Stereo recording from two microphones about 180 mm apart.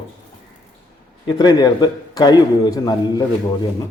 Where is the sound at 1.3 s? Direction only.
25° left (ahead or behind).